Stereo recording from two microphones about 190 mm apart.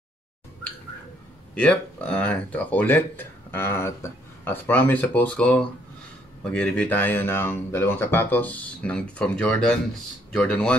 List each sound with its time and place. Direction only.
1.5 s speech: 5° left (ahead or behind)